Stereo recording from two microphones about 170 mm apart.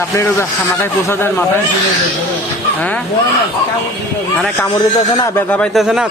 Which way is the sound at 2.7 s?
10° left (ahead or behind).